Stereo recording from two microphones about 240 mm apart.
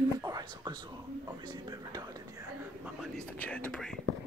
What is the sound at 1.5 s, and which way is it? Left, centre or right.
Speech, centre.